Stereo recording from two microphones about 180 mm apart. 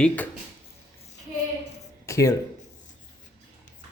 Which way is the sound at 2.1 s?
15° left (ahead or behind).